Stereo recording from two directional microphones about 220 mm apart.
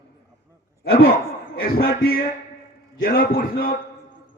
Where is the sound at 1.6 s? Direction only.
45° left (ahead or behind).